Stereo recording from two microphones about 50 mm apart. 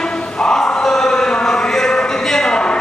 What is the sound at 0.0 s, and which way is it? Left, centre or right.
Chant, centre.